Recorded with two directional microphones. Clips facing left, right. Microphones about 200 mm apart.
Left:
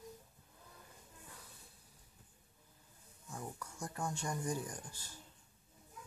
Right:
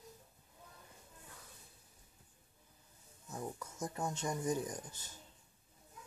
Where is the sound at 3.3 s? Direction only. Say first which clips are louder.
Right 4 dB; 20° right (ahead or behind).